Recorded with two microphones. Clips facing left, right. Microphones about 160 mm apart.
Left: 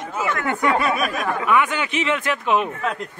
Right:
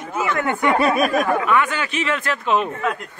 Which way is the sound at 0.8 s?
35° right (ahead or behind).